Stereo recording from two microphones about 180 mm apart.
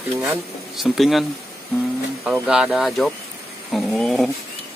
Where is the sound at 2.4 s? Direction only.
5° right (ahead or behind).